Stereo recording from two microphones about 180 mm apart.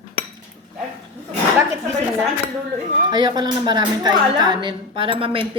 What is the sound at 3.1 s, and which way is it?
A woman's voice, 25° right (ahead or behind).